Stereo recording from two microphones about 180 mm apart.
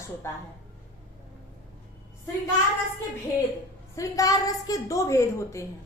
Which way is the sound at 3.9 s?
20° left (ahead or behind).